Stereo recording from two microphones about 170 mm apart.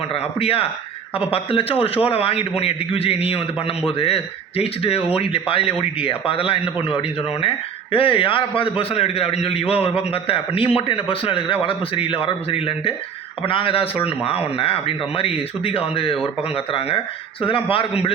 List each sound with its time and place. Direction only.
0.1 s a man's voice: 35° left (ahead or behind)
17.4 s a man's voice: 30° left (ahead or behind)